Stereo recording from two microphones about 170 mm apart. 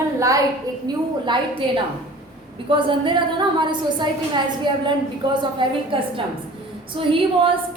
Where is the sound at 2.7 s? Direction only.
30° right (ahead or behind).